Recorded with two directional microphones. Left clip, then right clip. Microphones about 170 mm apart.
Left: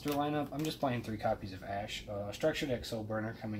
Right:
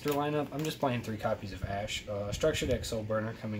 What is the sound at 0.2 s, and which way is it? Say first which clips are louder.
Speech: right 2 dB; 25° right (ahead or behind).